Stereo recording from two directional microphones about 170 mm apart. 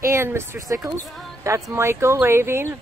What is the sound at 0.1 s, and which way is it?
Speech, 15° right (ahead or behind).